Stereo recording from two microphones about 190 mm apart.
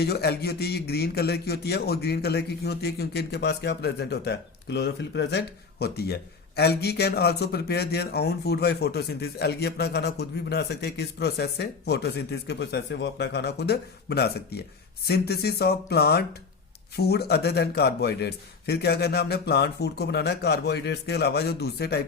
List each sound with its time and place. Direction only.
0.0 s a man's voice: 55° left (ahead or behind)